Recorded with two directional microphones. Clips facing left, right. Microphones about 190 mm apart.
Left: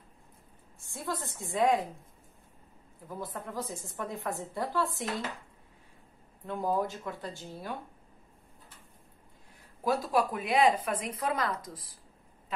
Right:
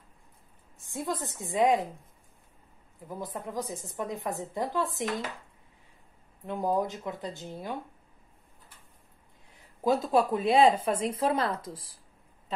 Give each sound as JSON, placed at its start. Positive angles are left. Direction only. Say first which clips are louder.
{"t": 0.7, "sound": "a woman's voice", "louder": "right 3 dB", "side_deg": -20}
{"t": 3.1, "sound": "a woman's voice", "louder": "right 2 dB", "side_deg": -15}
{"t": 6.4, "sound": "a woman's voice", "louder": "right 2 dB", "side_deg": -15}
{"t": 9.8, "sound": "speech", "louder": "right 4 dB", "side_deg": -25}